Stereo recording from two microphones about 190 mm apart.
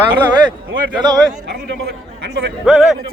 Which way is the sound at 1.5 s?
60° right (ahead or behind).